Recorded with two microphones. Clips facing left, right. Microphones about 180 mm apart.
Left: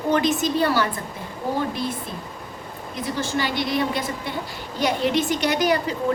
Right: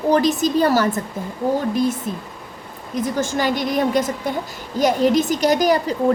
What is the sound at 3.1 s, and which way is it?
A woman's voice, 45° right (ahead or behind).